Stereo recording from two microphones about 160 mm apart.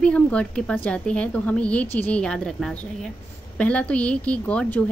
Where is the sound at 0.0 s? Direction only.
5° left (ahead or behind).